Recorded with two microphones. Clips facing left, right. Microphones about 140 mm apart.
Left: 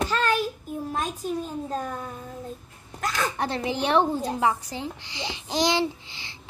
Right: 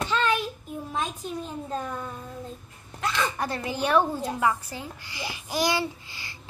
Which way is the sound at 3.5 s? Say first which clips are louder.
Left 1 dB; 20° left (ahead or behind).